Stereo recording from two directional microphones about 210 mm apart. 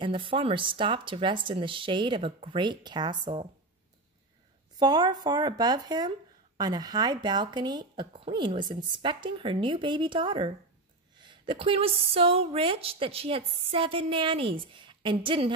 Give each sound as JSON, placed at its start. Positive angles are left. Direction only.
{"t": 0.0, "sound": "a woman's voice", "side_deg": -25}
{"t": 4.7, "sound": "a woman's voice", "side_deg": -20}